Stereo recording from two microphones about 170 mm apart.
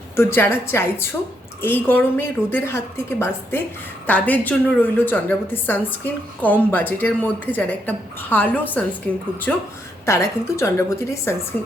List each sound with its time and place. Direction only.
0.2 s a woman's voice: 15° left (ahead or behind)